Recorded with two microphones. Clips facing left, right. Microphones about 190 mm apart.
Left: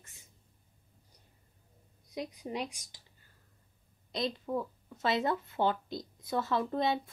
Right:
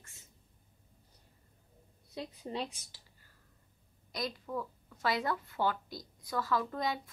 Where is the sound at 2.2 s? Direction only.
15° left (ahead or behind).